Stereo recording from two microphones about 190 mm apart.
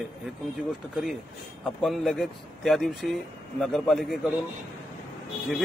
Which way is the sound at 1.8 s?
Centre (ahead or behind).